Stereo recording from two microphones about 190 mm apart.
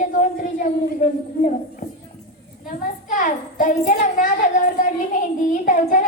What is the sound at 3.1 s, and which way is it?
A woman's voice, 45° left (ahead or behind).